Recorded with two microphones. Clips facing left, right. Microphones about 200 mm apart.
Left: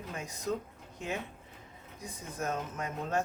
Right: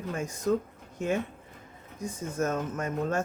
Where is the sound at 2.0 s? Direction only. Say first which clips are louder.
Right 7 dB; 45° right (ahead or behind).